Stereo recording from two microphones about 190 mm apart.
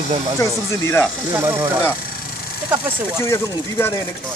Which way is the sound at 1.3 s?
10° right (ahead or behind).